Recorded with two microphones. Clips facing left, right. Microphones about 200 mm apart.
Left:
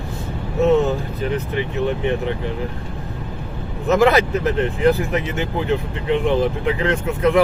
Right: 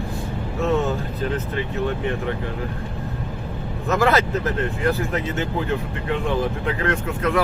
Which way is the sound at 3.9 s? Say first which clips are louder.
Left 4 dB; 20° left (ahead or behind).